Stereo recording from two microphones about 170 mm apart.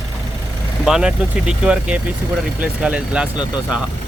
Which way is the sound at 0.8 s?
5° right (ahead or behind).